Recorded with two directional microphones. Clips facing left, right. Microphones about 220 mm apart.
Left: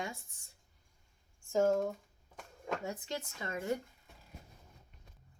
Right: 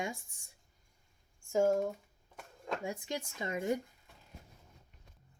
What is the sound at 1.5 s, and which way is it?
Speech, 10° right (ahead or behind).